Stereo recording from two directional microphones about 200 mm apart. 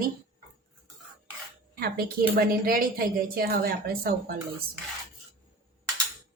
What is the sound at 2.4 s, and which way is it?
A woman's voice, 45° right (ahead or behind).